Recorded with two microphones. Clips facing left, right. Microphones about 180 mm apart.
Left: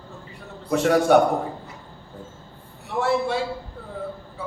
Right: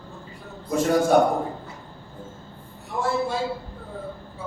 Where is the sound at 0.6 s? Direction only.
70° left (ahead or behind).